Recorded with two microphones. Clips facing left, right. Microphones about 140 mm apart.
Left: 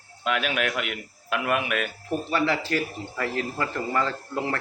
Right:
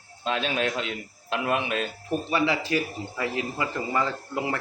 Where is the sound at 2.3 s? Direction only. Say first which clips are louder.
Even; 15° right (ahead or behind).